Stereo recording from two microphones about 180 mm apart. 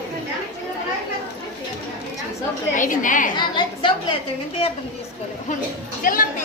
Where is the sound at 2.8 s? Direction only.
45° left (ahead or behind).